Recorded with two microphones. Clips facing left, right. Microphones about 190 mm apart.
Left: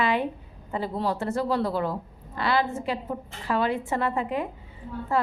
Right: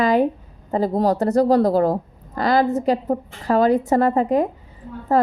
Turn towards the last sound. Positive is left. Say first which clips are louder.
# right 8 dB
turn(degrees=-40)  # may be behind; listen again after turning